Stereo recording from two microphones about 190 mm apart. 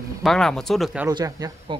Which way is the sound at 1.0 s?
20° right (ahead or behind).